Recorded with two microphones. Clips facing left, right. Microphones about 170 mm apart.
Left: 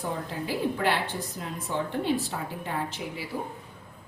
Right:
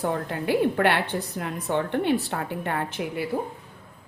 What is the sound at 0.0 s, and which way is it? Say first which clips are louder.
A woman's voice: right 5 dB; 65° right (ahead or behind).